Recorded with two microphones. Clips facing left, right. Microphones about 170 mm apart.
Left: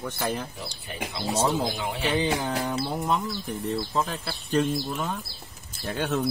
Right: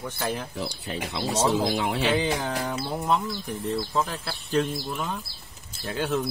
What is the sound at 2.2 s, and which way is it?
Speech, centre (ahead or behind).